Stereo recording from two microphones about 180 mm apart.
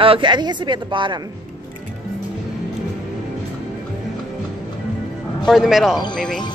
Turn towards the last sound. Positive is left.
turn(degrees=0)  # may be behind; listen again after turning